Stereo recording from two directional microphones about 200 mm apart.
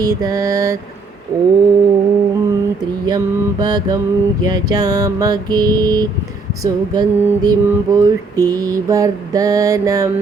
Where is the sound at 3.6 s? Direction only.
20° right (ahead or behind).